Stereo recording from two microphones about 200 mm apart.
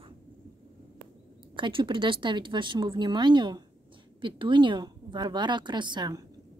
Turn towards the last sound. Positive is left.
turn(degrees=-20)  # may be behind; listen again after turning